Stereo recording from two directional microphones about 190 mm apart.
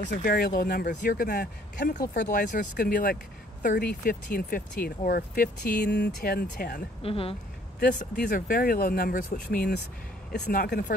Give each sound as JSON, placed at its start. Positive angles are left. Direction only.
{"t": 0.2, "sound": "speech", "side_deg": 50}
{"t": 7.0, "sound": "speech", "side_deg": 30}
{"t": 7.8, "sound": "speech", "side_deg": 45}